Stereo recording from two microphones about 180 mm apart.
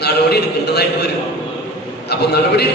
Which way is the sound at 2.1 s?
65° left (ahead or behind).